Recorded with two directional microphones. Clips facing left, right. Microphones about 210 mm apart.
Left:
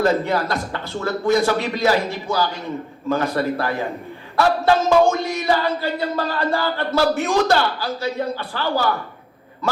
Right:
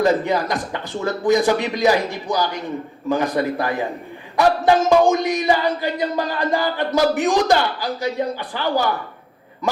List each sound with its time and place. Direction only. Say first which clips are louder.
0.0 s speech: right 1 dB; 15° right (ahead or behind)